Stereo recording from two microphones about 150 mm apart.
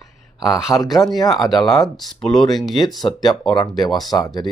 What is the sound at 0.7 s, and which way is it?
Speech, 20° left (ahead or behind).